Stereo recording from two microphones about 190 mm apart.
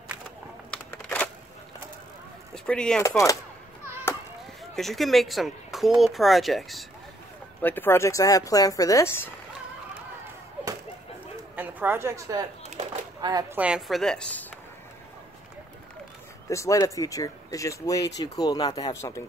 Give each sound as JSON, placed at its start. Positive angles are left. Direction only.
{"t": 0.7, "sound": "a sound", "side_deg": 5}
{"t": 2.5, "sound": "speech", "side_deg": 5}
{"t": 3.0, "sound": "speech", "side_deg": 15}
{"t": 4.1, "sound": "chop", "side_deg": 15}
{"t": 4.7, "sound": "speech", "side_deg": 0}
{"t": 7.6, "sound": "speech", "side_deg": 10}
{"t": 11.5, "sound": "a woman's voice", "side_deg": -10}
{"t": 12.6, "sound": "a sound", "side_deg": -35}
{"t": 13.2, "sound": "speech", "side_deg": -20}
{"t": 13.6, "sound": "speech", "side_deg": -5}
{"t": 16.4, "sound": "speech", "side_deg": 15}